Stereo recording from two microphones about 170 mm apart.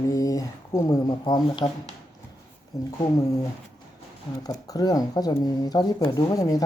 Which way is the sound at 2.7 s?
20° left (ahead or behind).